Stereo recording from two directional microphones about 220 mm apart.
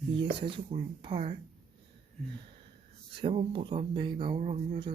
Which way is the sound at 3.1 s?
25° right (ahead or behind).